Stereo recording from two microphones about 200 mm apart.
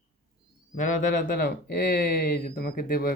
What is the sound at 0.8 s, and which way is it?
Speech, 40° left (ahead or behind).